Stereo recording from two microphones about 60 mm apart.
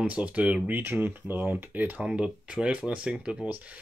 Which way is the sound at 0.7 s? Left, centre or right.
Right.